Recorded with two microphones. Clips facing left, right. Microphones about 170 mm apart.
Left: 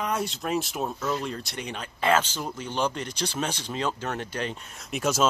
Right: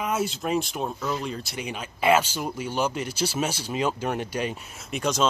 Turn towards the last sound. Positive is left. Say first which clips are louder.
# even
turn(degrees=0)  # may be behind; listen again after turning